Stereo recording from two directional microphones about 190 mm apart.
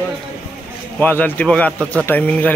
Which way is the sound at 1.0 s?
10° left (ahead or behind).